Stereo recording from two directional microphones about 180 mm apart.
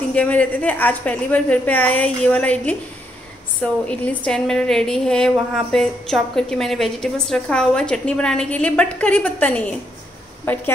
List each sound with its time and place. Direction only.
0.1 s a woman's voice: 5° left (ahead or behind)